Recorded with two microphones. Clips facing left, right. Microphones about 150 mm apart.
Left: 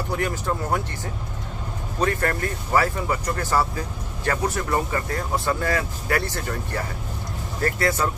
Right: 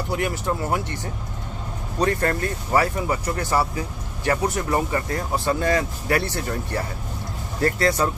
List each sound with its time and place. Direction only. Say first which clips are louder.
0.1 s speech: right 1 dB; 15° right (ahead or behind)
2.0 s speech: right 2 dB; 35° right (ahead or behind)
3.4 s speech: even; 15° right (ahead or behind)
5.3 s speech: right 1 dB; 15° right (ahead or behind)
5.6 s speech: right 3 dB; 30° right (ahead or behind)